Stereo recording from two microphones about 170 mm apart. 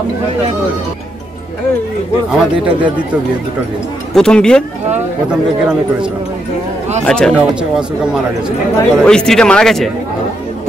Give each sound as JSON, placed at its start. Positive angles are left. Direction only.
{"t": 2.3, "sound": "speech", "side_deg": -5}
{"t": 4.1, "sound": "speech", "side_deg": 5}
{"t": 7.1, "sound": "speech", "side_deg": 5}